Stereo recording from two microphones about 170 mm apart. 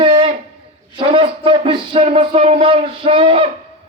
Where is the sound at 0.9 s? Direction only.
30° right (ahead or behind).